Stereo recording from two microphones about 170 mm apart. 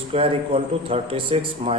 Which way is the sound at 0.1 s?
35° right (ahead or behind).